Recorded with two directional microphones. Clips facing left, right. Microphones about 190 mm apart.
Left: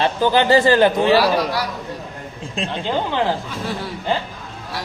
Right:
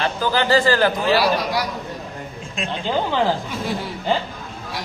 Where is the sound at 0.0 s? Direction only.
20° left (ahead or behind).